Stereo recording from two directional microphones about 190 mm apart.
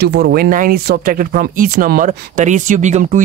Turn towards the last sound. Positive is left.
turn(degrees=-40)  # may be behind; listen again after turning